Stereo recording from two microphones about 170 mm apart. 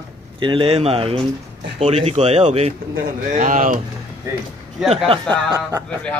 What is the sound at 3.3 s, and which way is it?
Speech, 50° right (ahead or behind).